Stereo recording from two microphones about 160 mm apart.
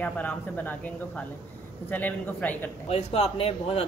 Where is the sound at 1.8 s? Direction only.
10° left (ahead or behind).